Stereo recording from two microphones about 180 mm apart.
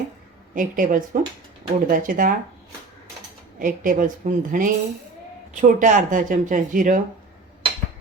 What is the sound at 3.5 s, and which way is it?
Speech, 50° right (ahead or behind).